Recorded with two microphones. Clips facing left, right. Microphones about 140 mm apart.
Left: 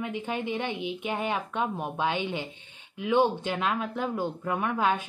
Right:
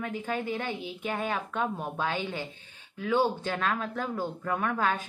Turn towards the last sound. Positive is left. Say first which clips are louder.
# left 2 dB
turn(degrees=15)  # may be behind; listen again after turning